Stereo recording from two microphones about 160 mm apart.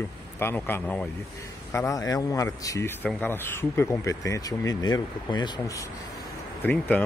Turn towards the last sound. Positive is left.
turn(degrees=10)  # may be behind; listen again after turning